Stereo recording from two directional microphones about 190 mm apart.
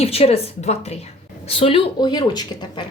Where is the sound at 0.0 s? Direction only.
30° left (ahead or behind).